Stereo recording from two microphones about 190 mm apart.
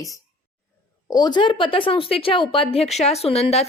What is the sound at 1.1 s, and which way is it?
A woman's voice, 20° left (ahead or behind).